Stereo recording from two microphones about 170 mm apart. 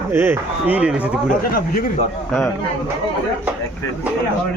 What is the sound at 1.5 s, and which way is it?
Speech, 60° left (ahead or behind).